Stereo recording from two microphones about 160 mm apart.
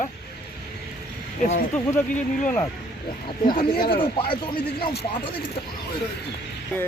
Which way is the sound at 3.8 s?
30° left (ahead or behind).